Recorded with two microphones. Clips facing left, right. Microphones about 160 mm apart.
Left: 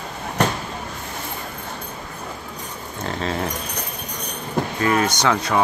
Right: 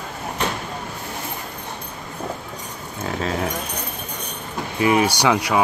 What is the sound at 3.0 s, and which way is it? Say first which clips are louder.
Speech: right 1 dB; 5° right (ahead or behind).